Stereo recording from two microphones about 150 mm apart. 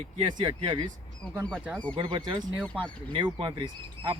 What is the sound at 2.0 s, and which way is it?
Speech, 30° right (ahead or behind).